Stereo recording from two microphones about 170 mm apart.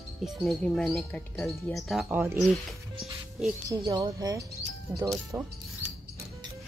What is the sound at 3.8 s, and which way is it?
Speech, 25° right (ahead or behind).